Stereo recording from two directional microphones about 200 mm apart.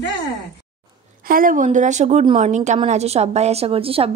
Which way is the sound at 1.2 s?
45° right (ahead or behind).